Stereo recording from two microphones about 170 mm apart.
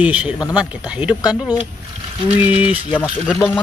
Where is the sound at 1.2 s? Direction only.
25° left (ahead or behind).